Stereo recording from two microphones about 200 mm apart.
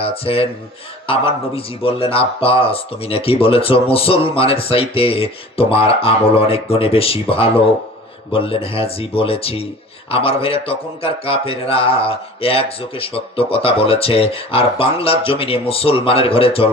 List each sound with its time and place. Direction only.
0.0 s a man's voice: 30° left (ahead or behind)